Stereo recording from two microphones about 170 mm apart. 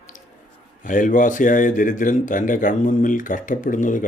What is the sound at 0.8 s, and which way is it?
Speech, 50° left (ahead or behind).